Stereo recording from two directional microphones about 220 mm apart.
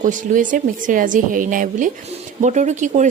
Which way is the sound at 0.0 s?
35° right (ahead or behind).